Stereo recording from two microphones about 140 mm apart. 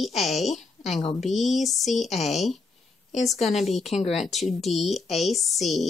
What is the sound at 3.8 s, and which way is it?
Speech, 50° left (ahead or behind).